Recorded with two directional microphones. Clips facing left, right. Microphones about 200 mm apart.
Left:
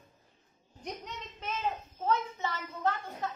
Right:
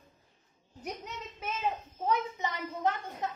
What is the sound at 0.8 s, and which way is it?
A child's voice, 5° right (ahead or behind).